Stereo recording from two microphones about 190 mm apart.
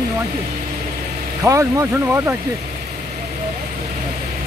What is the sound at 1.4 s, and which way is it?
Speech, 15° right (ahead or behind).